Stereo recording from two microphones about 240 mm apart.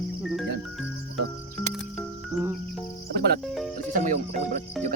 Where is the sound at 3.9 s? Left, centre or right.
Right.